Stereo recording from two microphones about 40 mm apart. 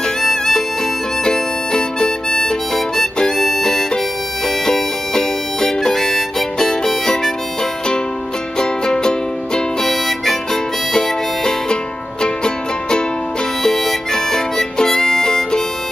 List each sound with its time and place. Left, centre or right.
0.2 s music: centre
1.2 s harmonica: centre
8.5 s music: centre
9.8 s harmonica: centre
13.6 s harmonica: centre